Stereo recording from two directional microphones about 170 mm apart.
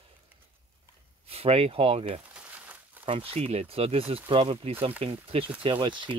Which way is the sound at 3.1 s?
35° right (ahead or behind).